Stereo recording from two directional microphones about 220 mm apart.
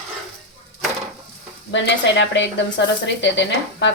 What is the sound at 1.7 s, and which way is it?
Speech, 55° left (ahead or behind).